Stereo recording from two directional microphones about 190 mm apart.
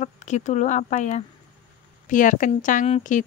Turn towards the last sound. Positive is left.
turn(degrees=40)  # may be behind; listen again after turning